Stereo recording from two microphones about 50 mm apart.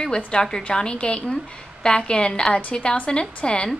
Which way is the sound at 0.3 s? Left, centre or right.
Centre.